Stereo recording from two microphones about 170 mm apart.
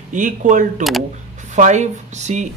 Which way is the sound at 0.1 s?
50° right (ahead or behind).